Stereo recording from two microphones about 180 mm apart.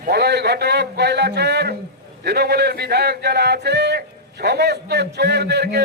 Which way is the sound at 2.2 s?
65° right (ahead or behind).